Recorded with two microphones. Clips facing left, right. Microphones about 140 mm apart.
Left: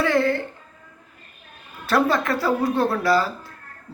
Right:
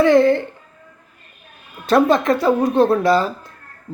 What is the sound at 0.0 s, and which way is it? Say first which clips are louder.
Music: right 8 dB; 20° right (ahead or behind).